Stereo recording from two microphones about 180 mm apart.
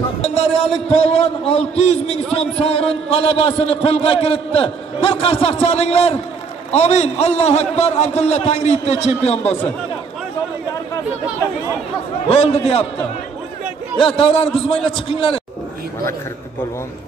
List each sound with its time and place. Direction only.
0.9 s a man's voice: 30° left (ahead or behind)
12.3 s a man's voice: 35° left (ahead or behind)
13.9 s a man's voice: 30° left (ahead or behind)